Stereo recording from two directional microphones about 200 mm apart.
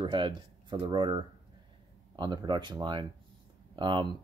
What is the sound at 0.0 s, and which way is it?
Speech, 20° right (ahead or behind).